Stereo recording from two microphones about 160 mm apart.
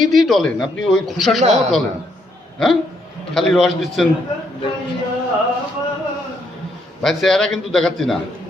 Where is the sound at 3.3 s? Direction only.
Centre (ahead or behind).